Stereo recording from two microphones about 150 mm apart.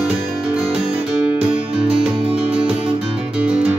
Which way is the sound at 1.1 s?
10° right (ahead or behind).